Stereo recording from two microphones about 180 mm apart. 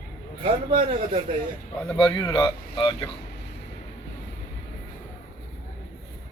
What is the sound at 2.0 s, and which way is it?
Speech, 25° left (ahead or behind).